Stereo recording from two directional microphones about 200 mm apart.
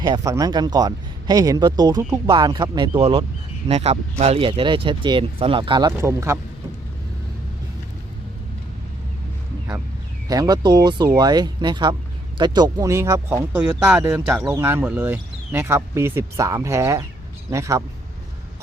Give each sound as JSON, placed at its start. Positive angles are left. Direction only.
{"t": 0.0, "sound": "speech", "side_deg": -20}
{"t": 6.0, "sound": "speech", "side_deg": -15}
{"t": 10.2, "sound": "speech", "side_deg": -20}